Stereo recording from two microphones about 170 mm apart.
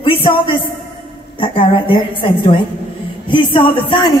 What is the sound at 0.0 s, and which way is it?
A man's voice, 30° left (ahead or behind).